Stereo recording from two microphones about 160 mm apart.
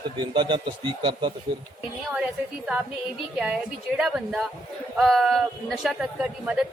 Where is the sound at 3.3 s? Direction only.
5° right (ahead or behind).